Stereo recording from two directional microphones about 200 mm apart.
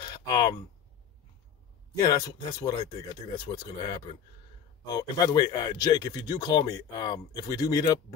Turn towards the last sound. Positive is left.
turn(degrees=20)  # may be behind; listen again after turning